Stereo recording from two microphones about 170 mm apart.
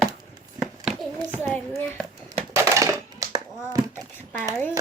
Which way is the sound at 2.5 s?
20° right (ahead or behind).